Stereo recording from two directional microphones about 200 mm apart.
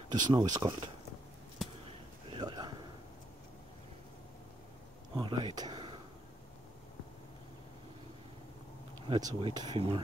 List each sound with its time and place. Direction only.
0.1 s speech: 20° right (ahead or behind)
1.9 s a sound: 25° right (ahead or behind)
5.1 s speech: 20° right (ahead or behind)
9.0 s speech: 25° right (ahead or behind)